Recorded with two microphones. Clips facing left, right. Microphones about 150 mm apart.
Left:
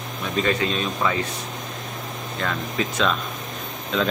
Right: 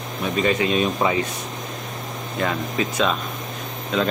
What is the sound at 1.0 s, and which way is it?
Speech, 20° right (ahead or behind).